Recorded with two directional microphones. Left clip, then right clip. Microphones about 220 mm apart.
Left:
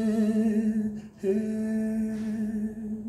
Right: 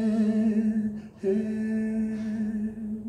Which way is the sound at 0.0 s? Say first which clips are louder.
Even; 15° left (ahead or behind).